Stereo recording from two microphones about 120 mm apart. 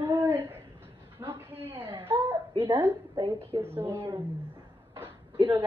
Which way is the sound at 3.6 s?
20° right (ahead or behind).